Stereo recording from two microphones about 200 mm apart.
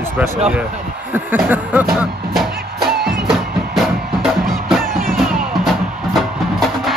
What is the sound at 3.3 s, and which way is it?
Music, centre (ahead or behind).